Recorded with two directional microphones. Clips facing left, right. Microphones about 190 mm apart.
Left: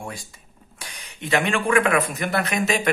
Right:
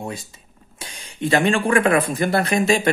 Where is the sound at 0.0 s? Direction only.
25° right (ahead or behind).